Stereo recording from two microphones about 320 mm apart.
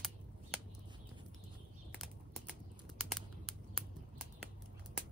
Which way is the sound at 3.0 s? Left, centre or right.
Centre.